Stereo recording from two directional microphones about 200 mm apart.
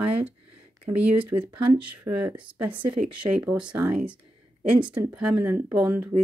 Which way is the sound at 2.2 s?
5° right (ahead or behind).